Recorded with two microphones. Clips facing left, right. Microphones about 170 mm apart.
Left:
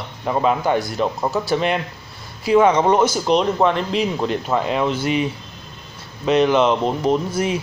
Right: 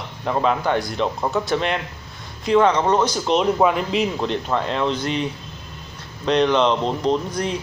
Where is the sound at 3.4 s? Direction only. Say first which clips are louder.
Right 2 dB; 5° right (ahead or behind).